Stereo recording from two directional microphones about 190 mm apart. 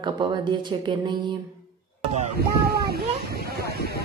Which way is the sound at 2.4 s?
55° right (ahead or behind).